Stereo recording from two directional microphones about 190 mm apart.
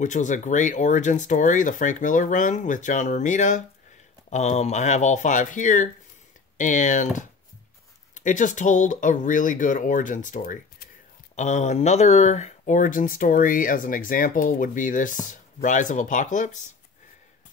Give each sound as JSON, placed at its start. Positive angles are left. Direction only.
{"t": 0.0, "sound": "speech", "side_deg": 40}